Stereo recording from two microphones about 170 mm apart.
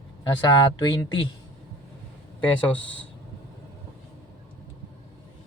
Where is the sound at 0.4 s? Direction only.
25° left (ahead or behind).